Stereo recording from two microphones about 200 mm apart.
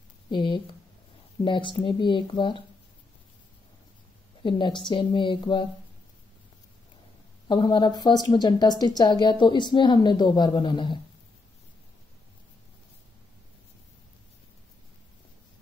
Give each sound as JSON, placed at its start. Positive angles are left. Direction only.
{"t": 0.3, "sound": "a woman's voice", "side_deg": 25}
{"t": 4.4, "sound": "a woman's voice", "side_deg": 25}
{"t": 7.4, "sound": "a woman's voice", "side_deg": 20}